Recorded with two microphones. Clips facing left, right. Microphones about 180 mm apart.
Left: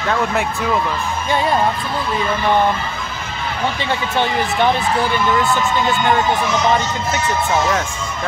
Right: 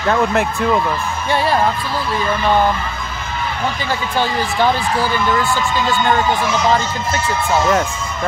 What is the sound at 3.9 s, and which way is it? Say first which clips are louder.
Speech: even; 20° left (ahead or behind).